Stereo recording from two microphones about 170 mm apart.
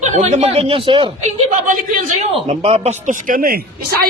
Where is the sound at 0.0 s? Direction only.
45° right (ahead or behind).